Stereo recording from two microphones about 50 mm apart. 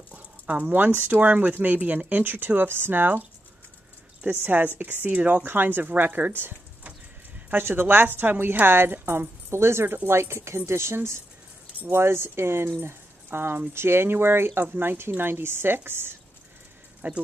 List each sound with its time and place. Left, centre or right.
0.1 s a sound: right
0.7 s speech: right
4.3 s speech: right
7.5 s speech: right
9.5 s speech: right
17.0 s speech: right